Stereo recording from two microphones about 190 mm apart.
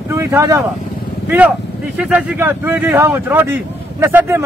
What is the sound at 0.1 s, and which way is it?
Speech, 15° right (ahead or behind).